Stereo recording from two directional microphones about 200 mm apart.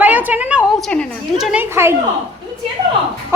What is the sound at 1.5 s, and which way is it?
Speech, 10° right (ahead or behind).